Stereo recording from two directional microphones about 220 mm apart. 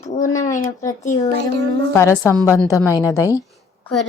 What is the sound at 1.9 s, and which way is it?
Speech, 10° left (ahead or behind).